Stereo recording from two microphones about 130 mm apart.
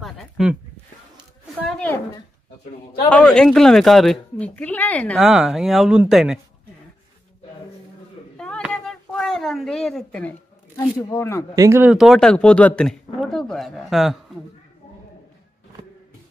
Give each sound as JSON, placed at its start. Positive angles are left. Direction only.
{"t": 0.0, "sound": "a sound", "side_deg": -5}
{"t": 3.1, "sound": "speech", "side_deg": 10}
{"t": 4.4, "sound": "speech", "side_deg": 10}
{"t": 8.4, "sound": "a sound", "side_deg": 5}
{"t": 11.0, "sound": "speech", "side_deg": 25}
{"t": 11.5, "sound": "speech", "side_deg": -25}
{"t": 11.8, "sound": "speech", "side_deg": -5}